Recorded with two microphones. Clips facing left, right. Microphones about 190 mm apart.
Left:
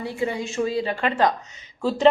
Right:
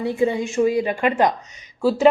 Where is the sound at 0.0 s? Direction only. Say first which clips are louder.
Right 6 dB; 20° right (ahead or behind).